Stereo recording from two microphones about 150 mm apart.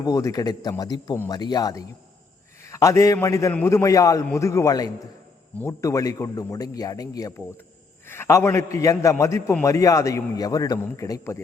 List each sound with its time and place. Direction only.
0.0 s a man's voice: 20° left (ahead or behind)